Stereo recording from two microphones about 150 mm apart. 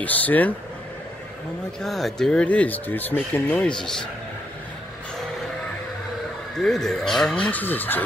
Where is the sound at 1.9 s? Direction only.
Centre (ahead or behind).